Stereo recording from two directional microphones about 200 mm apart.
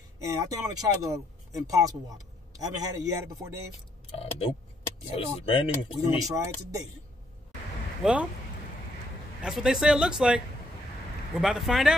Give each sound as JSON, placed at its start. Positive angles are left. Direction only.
{"t": 0.2, "sound": "speech", "side_deg": -15}
{"t": 4.2, "sound": "speech", "side_deg": 30}
{"t": 6.0, "sound": "speech", "side_deg": -15}
{"t": 8.0, "sound": "a man's voice", "side_deg": -5}
{"t": 9.4, "sound": "a man's voice", "side_deg": -5}